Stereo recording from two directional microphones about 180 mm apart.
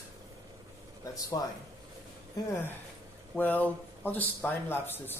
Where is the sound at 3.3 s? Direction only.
10° left (ahead or behind).